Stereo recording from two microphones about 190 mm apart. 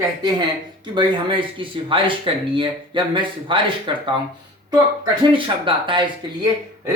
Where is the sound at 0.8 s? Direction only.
25° right (ahead or behind).